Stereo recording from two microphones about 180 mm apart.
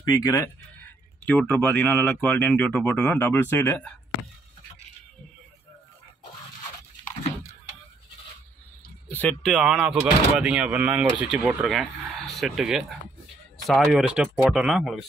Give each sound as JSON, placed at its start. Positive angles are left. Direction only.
{"t": 0.0, "sound": "speech", "side_deg": 20}
{"t": 9.1, "sound": "speech", "side_deg": 5}